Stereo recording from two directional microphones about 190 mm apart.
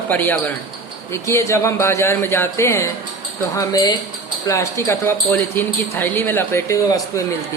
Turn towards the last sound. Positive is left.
turn(degrees=15)  # may be behind; listen again after turning